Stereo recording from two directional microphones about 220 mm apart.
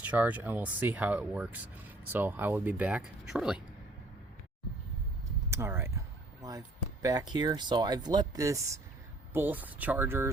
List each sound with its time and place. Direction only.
0.0 s speech: 5° right (ahead or behind)
5.5 s speech: 10° right (ahead or behind)
7.0 s speech: 15° right (ahead or behind)